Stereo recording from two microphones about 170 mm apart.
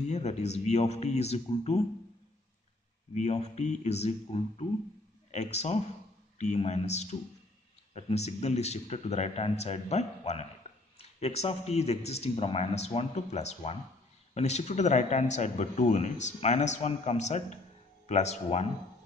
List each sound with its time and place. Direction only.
0.0 s a man's voice: 40° left (ahead or behind)
3.2 s a man's voice: 40° left (ahead or behind)
10.6 s a sound: 40° left (ahead or behind)
11.0 s a man's voice: 40° left (ahead or behind)